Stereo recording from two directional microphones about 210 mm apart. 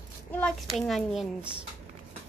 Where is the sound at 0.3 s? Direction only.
5° left (ahead or behind).